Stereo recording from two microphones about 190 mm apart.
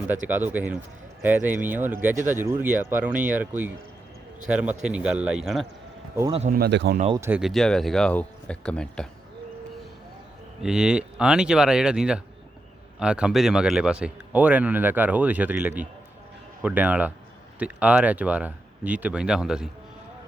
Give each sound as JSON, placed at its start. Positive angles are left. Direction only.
{"t": 0.3, "sound": "speech", "side_deg": -10}
{"t": 6.5, "sound": "speech", "side_deg": -60}
{"t": 7.2, "sound": "speech", "side_deg": -10}
{"t": 10.6, "sound": "speech", "side_deg": -5}